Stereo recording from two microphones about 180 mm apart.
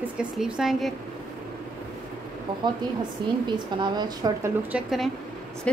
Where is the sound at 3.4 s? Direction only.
25° right (ahead or behind).